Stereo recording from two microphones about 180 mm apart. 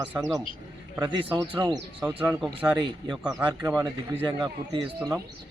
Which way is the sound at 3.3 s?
15° right (ahead or behind).